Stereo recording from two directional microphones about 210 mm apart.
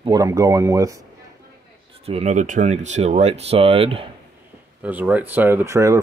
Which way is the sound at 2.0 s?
30° right (ahead or behind).